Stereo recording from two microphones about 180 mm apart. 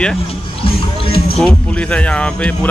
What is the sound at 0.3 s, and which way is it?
Music, 30° left (ahead or behind).